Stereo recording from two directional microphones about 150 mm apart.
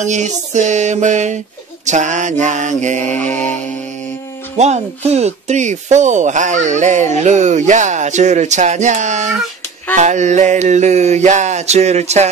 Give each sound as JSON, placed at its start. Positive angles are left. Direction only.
{"t": 0.0, "sound": "speech", "side_deg": -55}
{"t": 3.3, "sound": "mantra", "side_deg": 10}
{"t": 4.6, "sound": "speech", "side_deg": -45}